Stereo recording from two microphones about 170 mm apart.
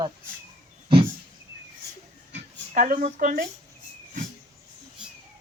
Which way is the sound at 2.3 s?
50° right (ahead or behind).